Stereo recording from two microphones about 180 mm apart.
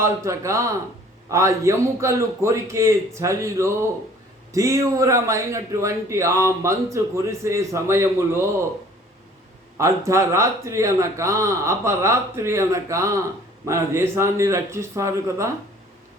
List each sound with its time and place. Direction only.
0.0 s a man's voice: 15° right (ahead or behind)
9.7 s a man's voice: 15° right (ahead or behind)